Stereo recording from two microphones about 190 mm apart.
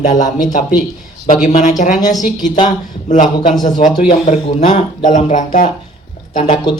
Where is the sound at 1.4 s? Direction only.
40° left (ahead or behind).